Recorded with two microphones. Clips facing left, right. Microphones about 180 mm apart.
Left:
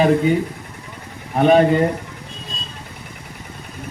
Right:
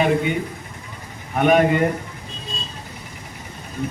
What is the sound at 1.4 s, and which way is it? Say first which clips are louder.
Speech: left 3 dB; 30° left (ahead or behind).